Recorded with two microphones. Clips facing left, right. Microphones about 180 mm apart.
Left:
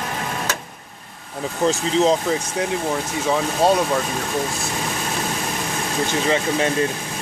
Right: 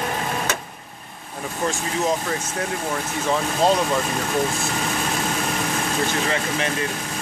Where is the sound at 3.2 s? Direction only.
10° left (ahead or behind).